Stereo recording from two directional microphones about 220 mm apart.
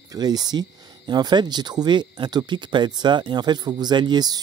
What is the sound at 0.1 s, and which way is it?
Speech, 15° right (ahead or behind).